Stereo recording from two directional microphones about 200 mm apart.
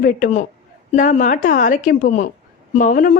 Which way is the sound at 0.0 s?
40° left (ahead or behind).